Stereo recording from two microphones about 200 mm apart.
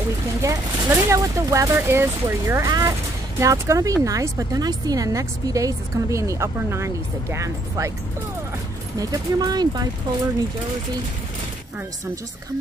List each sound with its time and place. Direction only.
0.4 s a woman's voice: 15° right (ahead or behind)
8.9 s speech: 20° right (ahead or behind)